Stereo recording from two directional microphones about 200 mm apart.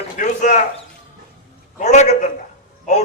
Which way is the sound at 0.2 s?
40° left (ahead or behind).